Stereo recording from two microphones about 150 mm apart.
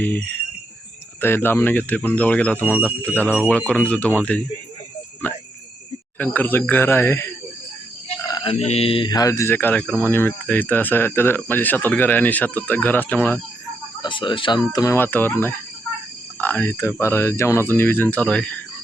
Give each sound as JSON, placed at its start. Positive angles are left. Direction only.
{"t": 0.0, "sound": "speech", "side_deg": 10}
{"t": 8.4, "sound": "speech", "side_deg": 45}
{"t": 14.0, "sound": "speech", "side_deg": 30}
{"t": 14.9, "sound": "speech", "side_deg": 15}